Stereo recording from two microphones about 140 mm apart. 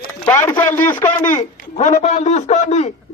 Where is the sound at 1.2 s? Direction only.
60° left (ahead or behind).